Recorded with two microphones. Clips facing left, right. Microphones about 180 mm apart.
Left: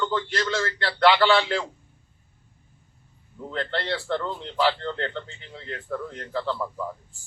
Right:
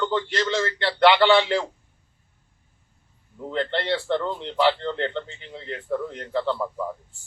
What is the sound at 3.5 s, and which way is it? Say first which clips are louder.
A man's voice: right 4 dB; 20° right (ahead or behind).